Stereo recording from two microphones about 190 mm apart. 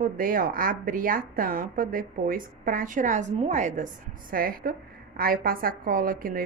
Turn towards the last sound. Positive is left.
turn(degrees=-50)  # may be behind; listen again after turning